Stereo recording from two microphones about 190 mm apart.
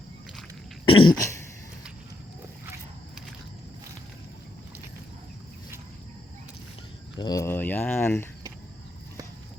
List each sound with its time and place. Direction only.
0.9 s throat clearing: 25° left (ahead or behind)
7.2 s speech: 20° left (ahead or behind)